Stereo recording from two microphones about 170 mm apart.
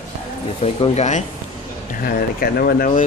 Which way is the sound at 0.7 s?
40° left (ahead or behind).